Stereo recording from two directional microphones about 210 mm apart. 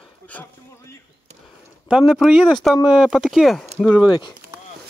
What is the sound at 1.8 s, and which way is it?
Speech, 5° right (ahead or behind).